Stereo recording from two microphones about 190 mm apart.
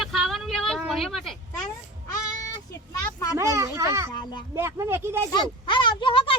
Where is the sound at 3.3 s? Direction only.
15° right (ahead or behind).